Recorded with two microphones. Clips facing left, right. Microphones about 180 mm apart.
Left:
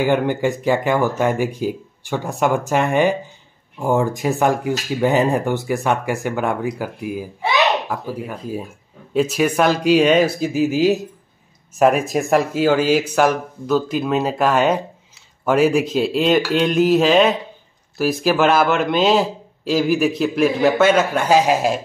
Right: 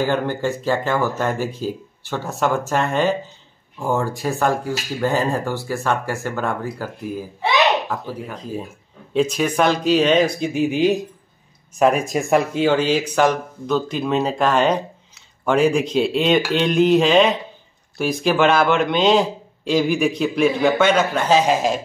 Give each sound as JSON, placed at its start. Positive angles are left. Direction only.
{"t": 0.0, "sound": "a man's voice", "side_deg": 15}